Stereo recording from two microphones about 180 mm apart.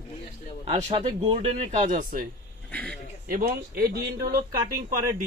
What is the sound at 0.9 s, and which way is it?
Speech, 30° right (ahead or behind).